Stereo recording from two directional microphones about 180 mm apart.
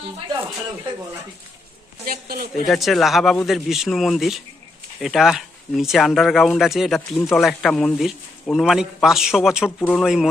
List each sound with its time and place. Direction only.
2.0 s speech: 55° right (ahead or behind)
2.6 s speech: centre (ahead or behind)
9.6 s speech: 10° left (ahead or behind)
10.0 s speech: centre (ahead or behind)